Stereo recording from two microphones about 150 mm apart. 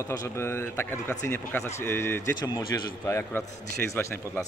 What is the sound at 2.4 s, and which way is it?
A man's voice, 25° left (ahead or behind).